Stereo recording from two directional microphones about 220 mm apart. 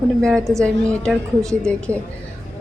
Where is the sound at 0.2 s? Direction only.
Centre (ahead or behind).